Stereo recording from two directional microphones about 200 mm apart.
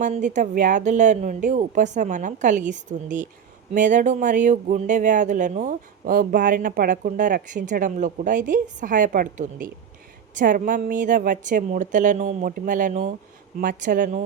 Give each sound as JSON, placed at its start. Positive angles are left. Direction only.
{"t": 0.0, "sound": "speech", "side_deg": -40}